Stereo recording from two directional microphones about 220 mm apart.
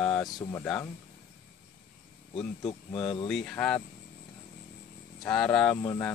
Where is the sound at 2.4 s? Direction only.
25° left (ahead or behind).